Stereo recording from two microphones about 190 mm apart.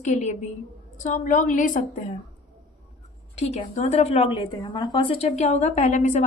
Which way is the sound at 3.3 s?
35° left (ahead or behind).